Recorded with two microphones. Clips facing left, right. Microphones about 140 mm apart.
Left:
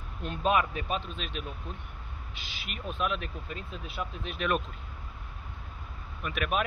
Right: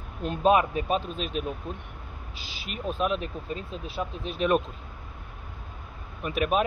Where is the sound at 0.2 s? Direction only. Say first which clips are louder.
Right 5 dB; 40° right (ahead or behind).